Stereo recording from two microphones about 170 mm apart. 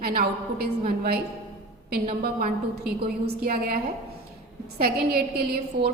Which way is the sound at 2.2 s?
60° right (ahead or behind).